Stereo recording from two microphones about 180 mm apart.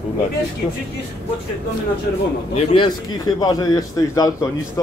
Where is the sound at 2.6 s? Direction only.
25° left (ahead or behind).